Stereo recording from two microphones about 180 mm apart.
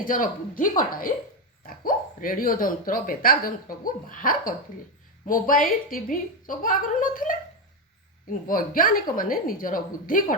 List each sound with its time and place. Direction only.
0.0 s speech: 50° left (ahead or behind)